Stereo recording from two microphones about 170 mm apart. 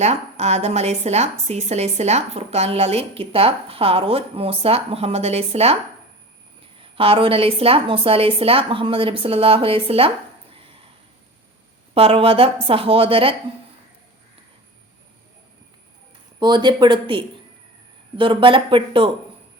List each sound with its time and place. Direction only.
0.0 s a woman's voice: 40° right (ahead or behind)
11.9 s a woman's voice: 35° right (ahead or behind)
16.4 s a woman's voice: 25° right (ahead or behind)